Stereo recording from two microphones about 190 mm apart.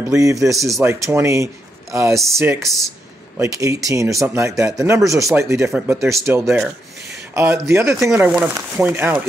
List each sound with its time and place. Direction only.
0.1 s speech: 15° right (ahead or behind)
5.7 s speech: centre (ahead or behind)